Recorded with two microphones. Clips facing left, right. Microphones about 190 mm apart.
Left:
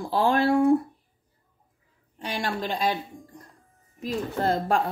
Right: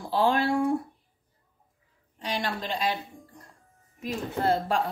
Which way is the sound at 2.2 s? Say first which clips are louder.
Left 2 dB; 50° left (ahead or behind).